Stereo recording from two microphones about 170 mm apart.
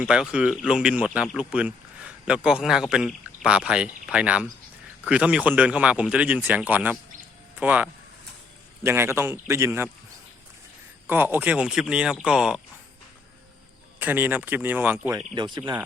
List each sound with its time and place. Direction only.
0.0 s speech: 5° right (ahead or behind)
11.0 s speech: 10° right (ahead or behind)
14.0 s speech: 10° right (ahead or behind)
15.4 s speech: 25° right (ahead or behind)